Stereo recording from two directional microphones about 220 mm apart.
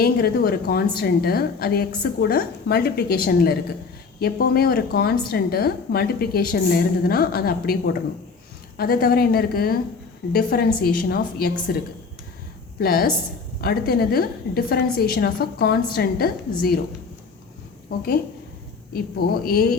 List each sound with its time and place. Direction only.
0.0 s a woman's voice: 45° left (ahead or behind)
8.8 s a woman's voice: 45° left (ahead or behind)
12.8 s a woman's voice: 45° left (ahead or behind)
18.9 s a woman's voice: 45° left (ahead or behind)